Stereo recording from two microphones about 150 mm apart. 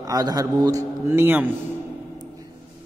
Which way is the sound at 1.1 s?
15° right (ahead or behind).